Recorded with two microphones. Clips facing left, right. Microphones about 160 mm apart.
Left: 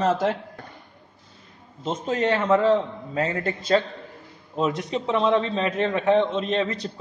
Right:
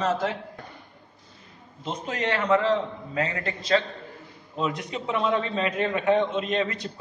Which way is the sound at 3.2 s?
45° left (ahead or behind).